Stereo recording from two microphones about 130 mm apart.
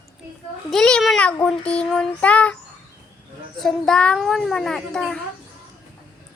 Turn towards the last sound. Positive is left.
turn(degrees=5)  # may be behind; listen again after turning